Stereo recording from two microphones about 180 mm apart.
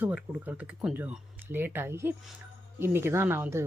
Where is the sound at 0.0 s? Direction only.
5° right (ahead or behind).